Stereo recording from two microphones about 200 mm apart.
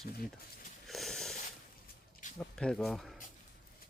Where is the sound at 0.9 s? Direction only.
Centre (ahead or behind).